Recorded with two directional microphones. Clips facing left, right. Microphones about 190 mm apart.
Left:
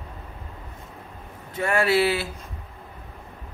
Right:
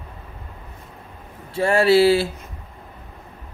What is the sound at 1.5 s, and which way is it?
Speech, 30° right (ahead or behind).